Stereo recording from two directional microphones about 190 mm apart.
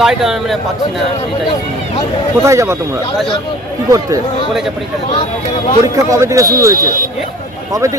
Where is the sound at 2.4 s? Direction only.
15° right (ahead or behind).